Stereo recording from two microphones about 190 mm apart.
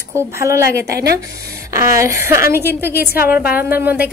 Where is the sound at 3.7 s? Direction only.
10° right (ahead or behind).